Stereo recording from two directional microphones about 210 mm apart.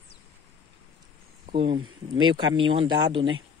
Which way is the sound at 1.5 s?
25° right (ahead or behind).